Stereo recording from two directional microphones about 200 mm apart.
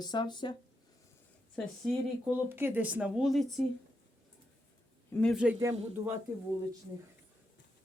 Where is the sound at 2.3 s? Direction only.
10° right (ahead or behind).